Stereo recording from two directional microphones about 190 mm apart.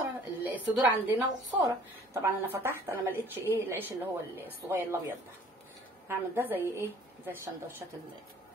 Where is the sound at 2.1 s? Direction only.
15° right (ahead or behind).